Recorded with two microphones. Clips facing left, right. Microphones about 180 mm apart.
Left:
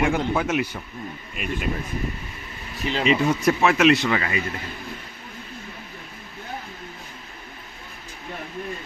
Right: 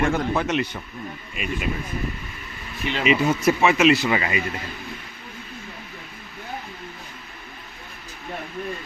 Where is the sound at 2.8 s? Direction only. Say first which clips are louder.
Left 1 dB; 35° left (ahead or behind).